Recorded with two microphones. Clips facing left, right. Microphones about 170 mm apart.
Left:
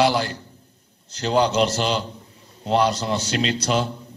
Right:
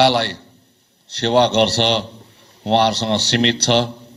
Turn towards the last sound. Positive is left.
turn(degrees=-75)  # may be behind; listen again after turning